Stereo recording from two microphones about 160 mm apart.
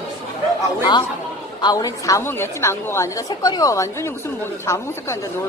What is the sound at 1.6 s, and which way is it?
A woman's voice, 20° left (ahead or behind).